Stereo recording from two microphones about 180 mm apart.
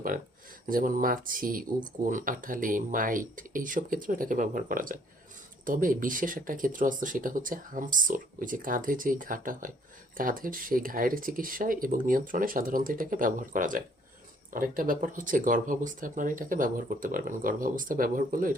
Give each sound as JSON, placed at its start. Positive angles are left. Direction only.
{"t": 0.7, "sound": "speech", "side_deg": -50}